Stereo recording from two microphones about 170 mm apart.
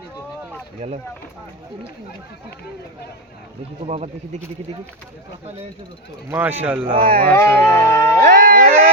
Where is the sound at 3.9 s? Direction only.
40° right (ahead or behind).